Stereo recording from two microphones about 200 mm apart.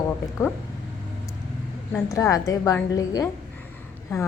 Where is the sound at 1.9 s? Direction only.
10° left (ahead or behind).